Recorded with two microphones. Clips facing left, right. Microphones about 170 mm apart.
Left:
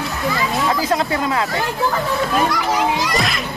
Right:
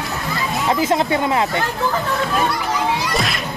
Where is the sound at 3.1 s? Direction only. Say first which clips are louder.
Left 1 dB; centre (ahead or behind).